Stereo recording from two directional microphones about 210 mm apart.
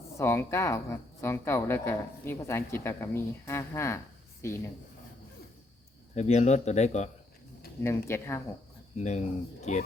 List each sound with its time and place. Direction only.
0.2 s speech: 10° left (ahead or behind)
6.1 s speech: 30° left (ahead or behind)
7.8 s speech: 10° left (ahead or behind)
9.0 s speech: 35° left (ahead or behind)